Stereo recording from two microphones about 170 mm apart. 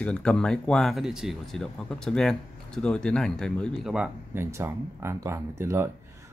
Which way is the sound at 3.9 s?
5° right (ahead or behind).